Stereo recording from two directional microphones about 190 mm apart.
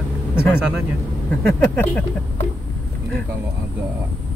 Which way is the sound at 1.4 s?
10° left (ahead or behind).